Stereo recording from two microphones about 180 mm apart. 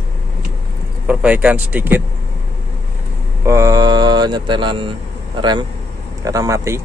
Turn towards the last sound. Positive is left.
turn(degrees=-15)  # may be behind; listen again after turning